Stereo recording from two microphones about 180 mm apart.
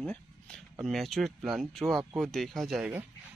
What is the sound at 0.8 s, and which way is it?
Speech, centre (ahead or behind).